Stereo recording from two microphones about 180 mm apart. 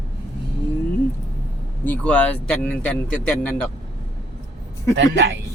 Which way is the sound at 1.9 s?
5° left (ahead or behind).